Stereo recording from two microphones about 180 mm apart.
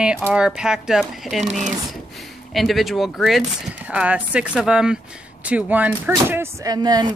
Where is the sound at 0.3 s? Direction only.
5° right (ahead or behind).